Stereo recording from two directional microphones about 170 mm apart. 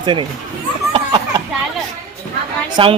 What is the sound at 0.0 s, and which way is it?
Speech, 30° right (ahead or behind).